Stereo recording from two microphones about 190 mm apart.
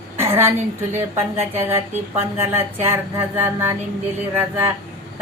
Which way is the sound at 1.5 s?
10° right (ahead or behind).